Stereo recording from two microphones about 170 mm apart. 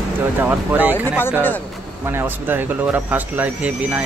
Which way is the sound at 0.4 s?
10° right (ahead or behind).